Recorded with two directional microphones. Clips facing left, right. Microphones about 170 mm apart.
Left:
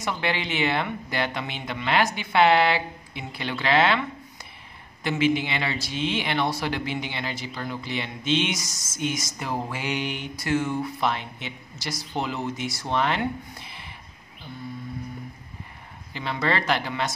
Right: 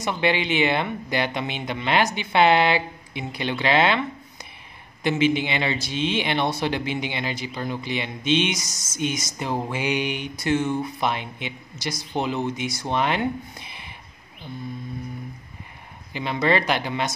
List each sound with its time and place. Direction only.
0.0 s speech: 20° right (ahead or behind)
5.0 s speech: 20° right (ahead or behind)
16.1 s speech: 15° right (ahead or behind)